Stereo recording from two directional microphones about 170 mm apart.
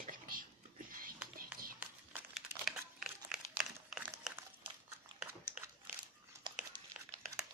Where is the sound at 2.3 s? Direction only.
Centre (ahead or behind).